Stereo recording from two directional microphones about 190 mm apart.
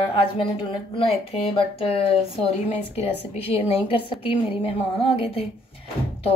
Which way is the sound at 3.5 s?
30° left (ahead or behind).